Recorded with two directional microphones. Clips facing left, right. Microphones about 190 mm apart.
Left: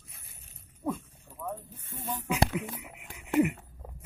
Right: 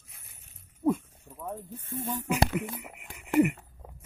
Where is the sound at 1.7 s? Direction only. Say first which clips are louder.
Right 4 dB; 50° right (ahead or behind).